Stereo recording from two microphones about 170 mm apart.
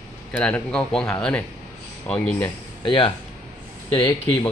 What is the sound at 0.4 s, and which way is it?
Speech, 5° left (ahead or behind).